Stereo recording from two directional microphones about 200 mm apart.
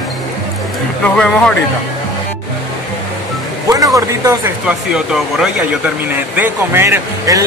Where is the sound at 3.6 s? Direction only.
15° right (ahead or behind).